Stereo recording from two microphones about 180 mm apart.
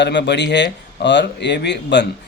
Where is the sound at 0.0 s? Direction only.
75° left (ahead or behind).